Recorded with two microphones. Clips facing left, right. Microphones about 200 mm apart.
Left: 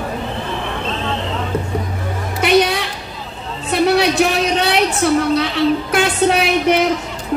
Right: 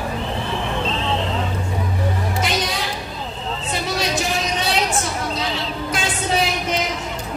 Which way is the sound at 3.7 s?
65° left (ahead or behind).